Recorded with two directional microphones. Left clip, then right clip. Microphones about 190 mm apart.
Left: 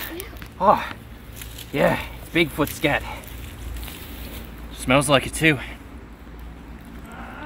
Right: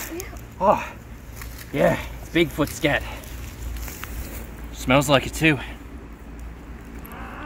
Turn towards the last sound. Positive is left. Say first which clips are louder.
# left 1 dB
turn(degrees=10)  # may be behind; listen again after turning